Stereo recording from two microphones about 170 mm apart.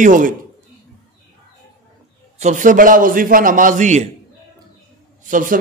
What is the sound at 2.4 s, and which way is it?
A man's voice, 45° right (ahead or behind).